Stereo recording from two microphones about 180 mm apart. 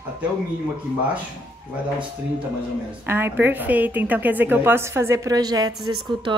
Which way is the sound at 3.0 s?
15° right (ahead or behind).